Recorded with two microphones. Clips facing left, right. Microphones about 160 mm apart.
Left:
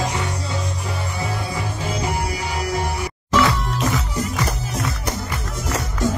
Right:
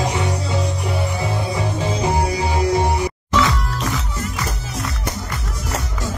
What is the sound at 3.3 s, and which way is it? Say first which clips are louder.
Music: left 2 dB; 5° left (ahead or behind).